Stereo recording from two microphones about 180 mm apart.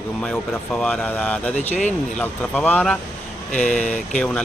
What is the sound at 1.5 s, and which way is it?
Speech, 40° left (ahead or behind).